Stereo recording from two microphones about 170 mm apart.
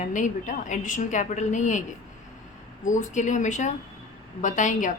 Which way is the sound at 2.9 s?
45° left (ahead or behind).